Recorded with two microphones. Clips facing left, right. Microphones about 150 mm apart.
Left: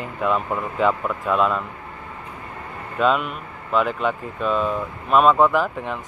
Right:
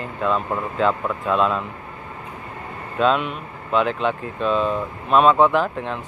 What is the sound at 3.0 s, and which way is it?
Speech, 5° left (ahead or behind).